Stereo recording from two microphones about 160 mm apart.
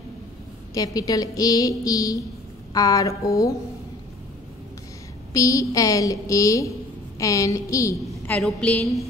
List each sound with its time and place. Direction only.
0.7 s a woman's voice: 20° left (ahead or behind)
5.3 s a woman's voice: 20° left (ahead or behind)
8.4 s a woman's voice: 5° left (ahead or behind)